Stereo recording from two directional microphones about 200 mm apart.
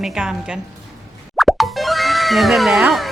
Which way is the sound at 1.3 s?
Centre (ahead or behind).